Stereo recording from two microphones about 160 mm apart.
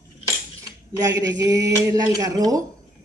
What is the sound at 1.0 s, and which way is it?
Speech, 20° right (ahead or behind).